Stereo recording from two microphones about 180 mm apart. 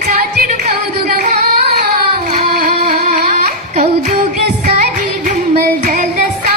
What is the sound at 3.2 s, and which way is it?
Carnatic music, 40° right (ahead or behind).